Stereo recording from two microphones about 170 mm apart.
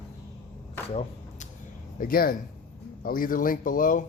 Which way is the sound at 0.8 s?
35° left (ahead or behind).